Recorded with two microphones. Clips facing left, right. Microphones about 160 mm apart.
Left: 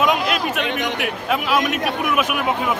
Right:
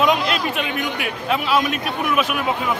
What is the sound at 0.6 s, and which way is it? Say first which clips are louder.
Speech: left 1 dB; 75° left (ahead or behind).